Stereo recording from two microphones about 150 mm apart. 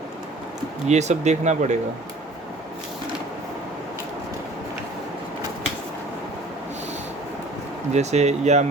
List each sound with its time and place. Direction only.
0.9 s speech: 50° right (ahead or behind)
7.9 s speech: 50° right (ahead or behind)